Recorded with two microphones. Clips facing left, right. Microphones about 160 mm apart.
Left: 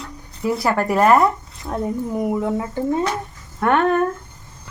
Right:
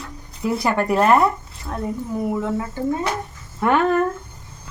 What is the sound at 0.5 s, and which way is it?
Speech, centre (ahead or behind).